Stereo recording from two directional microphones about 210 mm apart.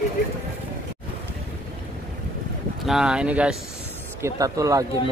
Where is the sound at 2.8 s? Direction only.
5° right (ahead or behind).